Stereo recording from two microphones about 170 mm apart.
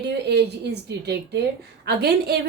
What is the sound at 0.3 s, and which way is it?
A woman's voice, 75° right (ahead or behind).